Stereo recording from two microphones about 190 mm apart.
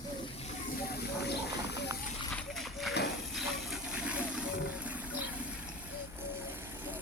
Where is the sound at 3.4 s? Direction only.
5° right (ahead or behind).